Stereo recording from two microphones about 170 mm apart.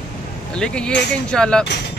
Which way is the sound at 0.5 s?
5° left (ahead or behind).